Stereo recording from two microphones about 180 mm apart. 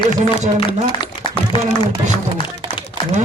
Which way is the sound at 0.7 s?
25° left (ahead or behind).